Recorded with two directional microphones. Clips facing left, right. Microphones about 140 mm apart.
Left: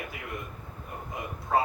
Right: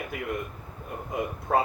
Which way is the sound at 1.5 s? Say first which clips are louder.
Right 1 dB; 60° right (ahead or behind).